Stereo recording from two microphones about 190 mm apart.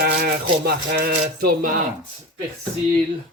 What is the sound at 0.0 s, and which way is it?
Speech, 55° right (ahead or behind).